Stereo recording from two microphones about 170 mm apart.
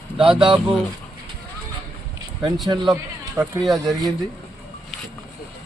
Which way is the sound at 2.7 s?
25° right (ahead or behind).